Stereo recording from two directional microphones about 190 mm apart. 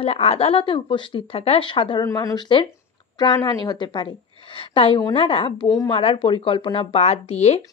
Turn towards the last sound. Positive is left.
turn(degrees=35)  # may be behind; listen again after turning